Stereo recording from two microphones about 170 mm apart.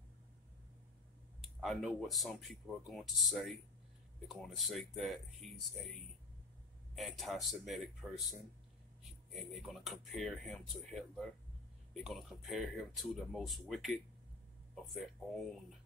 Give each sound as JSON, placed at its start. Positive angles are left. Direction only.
{"t": 1.4, "sound": "speech", "side_deg": 0}
{"t": 7.0, "sound": "speech", "side_deg": 0}